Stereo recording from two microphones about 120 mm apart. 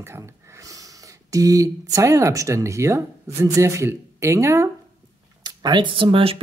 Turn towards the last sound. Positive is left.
turn(degrees=-50)  # may be behind; listen again after turning